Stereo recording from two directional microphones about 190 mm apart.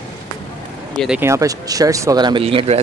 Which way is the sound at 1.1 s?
15° right (ahead or behind).